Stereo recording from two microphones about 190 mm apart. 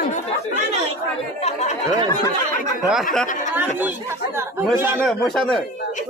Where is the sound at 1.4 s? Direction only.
35° left (ahead or behind).